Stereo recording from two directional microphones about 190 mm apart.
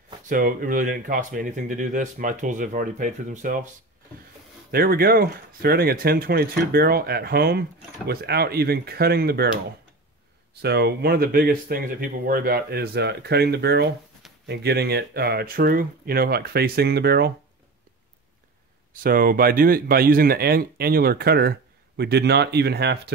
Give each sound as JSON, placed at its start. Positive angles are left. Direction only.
{"t": 0.3, "sound": "speech", "side_deg": -50}
{"t": 4.6, "sound": "speech", "side_deg": -55}
{"t": 10.5, "sound": "speech", "side_deg": -60}
{"t": 19.0, "sound": "speech", "side_deg": -50}